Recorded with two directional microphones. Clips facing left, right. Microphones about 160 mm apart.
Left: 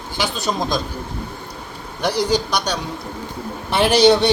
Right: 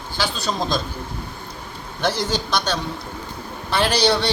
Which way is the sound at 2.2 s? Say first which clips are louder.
Left 4 dB; 15° left (ahead or behind).